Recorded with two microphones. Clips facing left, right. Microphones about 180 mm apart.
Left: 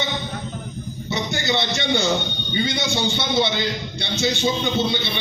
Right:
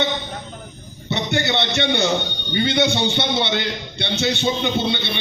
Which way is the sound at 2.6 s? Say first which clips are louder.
Right 7 dB; 65° right (ahead or behind).